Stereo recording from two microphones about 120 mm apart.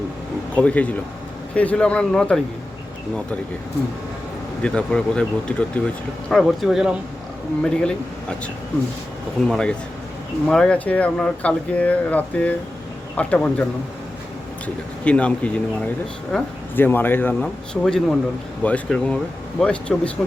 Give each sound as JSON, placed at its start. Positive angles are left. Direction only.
{"t": 0.5, "sound": "speech", "side_deg": 10}
{"t": 4.6, "sound": "speech", "side_deg": 5}
{"t": 7.6, "sound": "speech", "side_deg": 10}
{"t": 9.5, "sound": "speech", "side_deg": 5}
{"t": 15.0, "sound": "speech", "side_deg": 10}
{"t": 16.3, "sound": "speech", "side_deg": 5}
{"t": 16.7, "sound": "speech", "side_deg": 15}
{"t": 17.4, "sound": "speech", "side_deg": 5}